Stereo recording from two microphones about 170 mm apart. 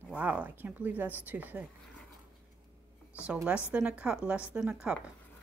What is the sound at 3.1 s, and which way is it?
Speech, 5° right (ahead or behind).